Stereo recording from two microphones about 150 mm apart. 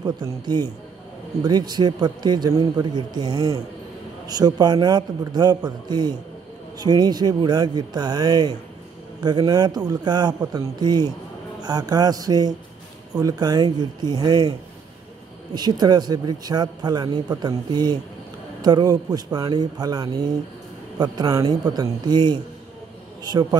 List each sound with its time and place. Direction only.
0.0 s a man's voice: 30° right (ahead or behind)
15.5 s a man's voice: 25° right (ahead or behind)